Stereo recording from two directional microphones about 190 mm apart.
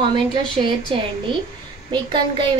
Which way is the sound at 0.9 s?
30° right (ahead or behind).